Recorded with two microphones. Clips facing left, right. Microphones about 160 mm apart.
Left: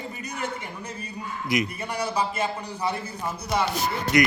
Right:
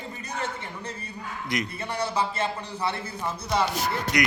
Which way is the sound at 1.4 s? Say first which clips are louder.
Left 4 dB; 10° left (ahead or behind).